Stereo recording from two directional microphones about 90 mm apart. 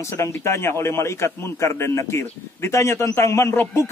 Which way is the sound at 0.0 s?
30° left (ahead or behind).